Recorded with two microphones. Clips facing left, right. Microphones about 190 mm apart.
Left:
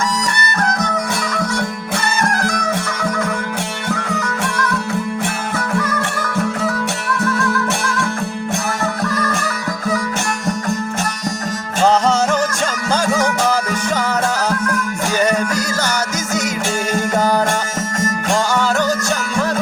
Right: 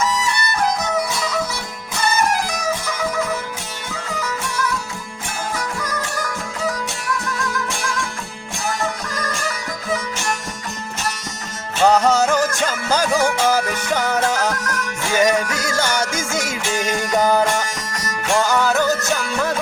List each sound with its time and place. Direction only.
0.3 s music: 5° right (ahead or behind)
14.6 s music: 40° right (ahead or behind)
18.5 s music: centre (ahead or behind)